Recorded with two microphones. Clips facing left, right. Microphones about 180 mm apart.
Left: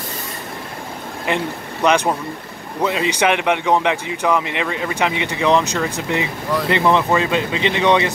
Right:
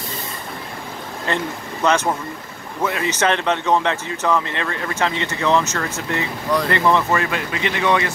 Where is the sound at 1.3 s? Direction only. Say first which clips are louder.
Left 2 dB; 15° left (ahead or behind).